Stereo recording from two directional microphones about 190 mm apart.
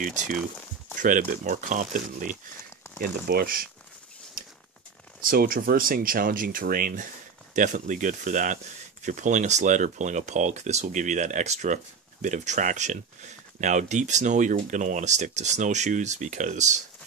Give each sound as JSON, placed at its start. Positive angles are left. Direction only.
{"t": 0.0, "sound": "speech", "side_deg": -40}
{"t": 5.2, "sound": "speech", "side_deg": -50}